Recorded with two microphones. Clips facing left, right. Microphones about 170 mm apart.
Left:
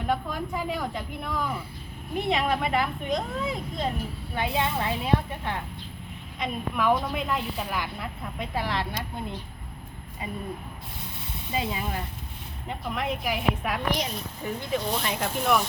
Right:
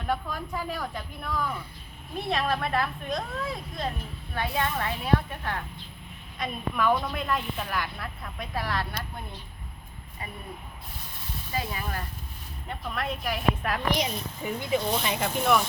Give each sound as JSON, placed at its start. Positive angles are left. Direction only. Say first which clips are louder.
{"t": 0.1, "sound": "speech", "louder": "left 1 dB", "side_deg": 15}
{"t": 11.5, "sound": "speech", "louder": "left 3 dB", "side_deg": 20}